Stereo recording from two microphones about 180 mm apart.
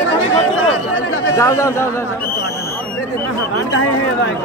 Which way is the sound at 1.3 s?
15° left (ahead or behind).